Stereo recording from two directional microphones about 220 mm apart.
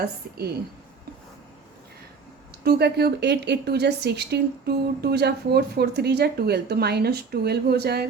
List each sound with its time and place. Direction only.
0.0 s a woman's voice: 45° right (ahead or behind)
2.6 s a woman's voice: 45° right (ahead or behind)